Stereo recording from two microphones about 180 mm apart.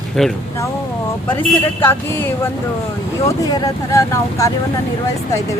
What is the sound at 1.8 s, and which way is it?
Speech, 10° left (ahead or behind).